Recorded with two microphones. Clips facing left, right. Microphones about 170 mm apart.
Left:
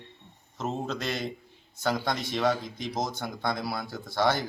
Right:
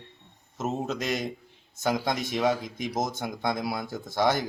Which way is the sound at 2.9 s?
45° right (ahead or behind).